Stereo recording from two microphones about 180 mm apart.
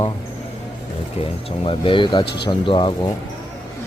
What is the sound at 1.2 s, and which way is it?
Speech, 30° left (ahead or behind).